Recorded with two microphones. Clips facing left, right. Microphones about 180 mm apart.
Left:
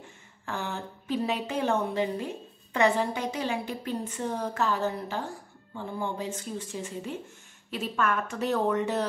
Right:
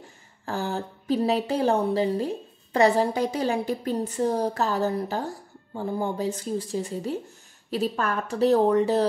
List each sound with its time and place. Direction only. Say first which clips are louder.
0.0 s speech: right 4 dB; 35° right (ahead or behind)